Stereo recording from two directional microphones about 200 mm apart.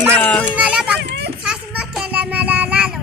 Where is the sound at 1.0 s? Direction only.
60° right (ahead or behind).